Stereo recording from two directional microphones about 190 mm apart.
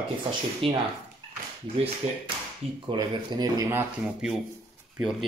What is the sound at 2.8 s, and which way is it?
Speech, 25° right (ahead or behind).